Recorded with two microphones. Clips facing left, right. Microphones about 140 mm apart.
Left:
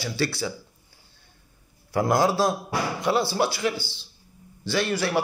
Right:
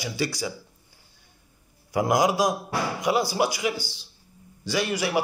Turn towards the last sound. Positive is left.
turn(degrees=-15)  # may be behind; listen again after turning